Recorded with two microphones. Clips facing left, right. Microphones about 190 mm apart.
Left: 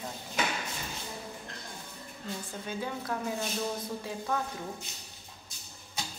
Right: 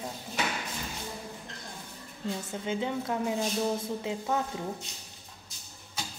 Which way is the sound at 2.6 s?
20° right (ahead or behind).